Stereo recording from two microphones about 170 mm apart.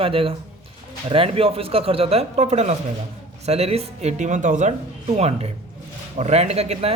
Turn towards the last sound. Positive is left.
turn(degrees=-40)  # may be behind; listen again after turning